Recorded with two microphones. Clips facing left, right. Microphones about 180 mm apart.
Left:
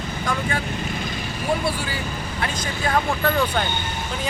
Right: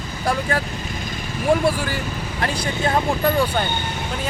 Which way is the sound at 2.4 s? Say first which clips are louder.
Right 4 dB; 30° right (ahead or behind).